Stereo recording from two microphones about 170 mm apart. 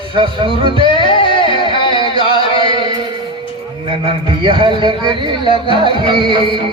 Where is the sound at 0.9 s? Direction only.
30° left (ahead or behind).